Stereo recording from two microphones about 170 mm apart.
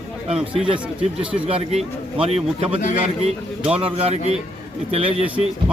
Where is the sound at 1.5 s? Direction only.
35° right (ahead or behind).